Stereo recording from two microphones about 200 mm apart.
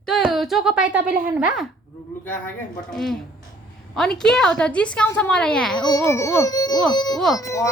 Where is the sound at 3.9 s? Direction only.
Centre (ahead or behind).